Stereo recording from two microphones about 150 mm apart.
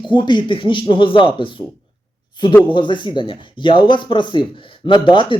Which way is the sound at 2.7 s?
30° left (ahead or behind).